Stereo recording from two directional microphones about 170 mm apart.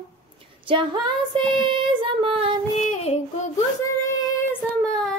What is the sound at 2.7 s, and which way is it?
Child singing, 40° left (ahead or behind).